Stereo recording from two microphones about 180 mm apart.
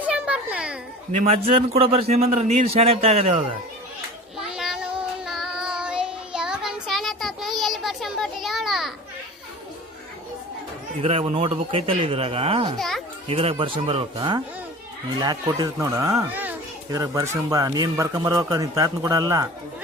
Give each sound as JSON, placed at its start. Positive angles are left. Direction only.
{"t": 0.0, "sound": "a sound", "side_deg": -5}
{"t": 1.1, "sound": "a man's voice", "side_deg": -35}
{"t": 4.4, "sound": "child singing", "side_deg": -5}
{"t": 11.0, "sound": "a man's voice", "side_deg": -35}
{"t": 16.9, "sound": "a man's voice", "side_deg": -20}